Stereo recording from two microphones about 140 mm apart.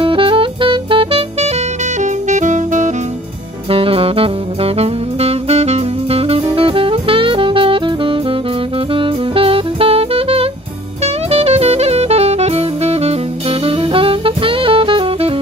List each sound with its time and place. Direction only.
0.0 s saxophone: 40° right (ahead or behind)
2.0 s music: 60° right (ahead or behind)
3.7 s music: 40° right (ahead or behind)
11.2 s saxophone: 45° right (ahead or behind)